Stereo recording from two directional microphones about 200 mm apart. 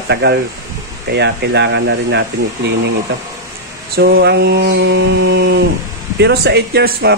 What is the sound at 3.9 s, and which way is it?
Speech, 50° right (ahead or behind).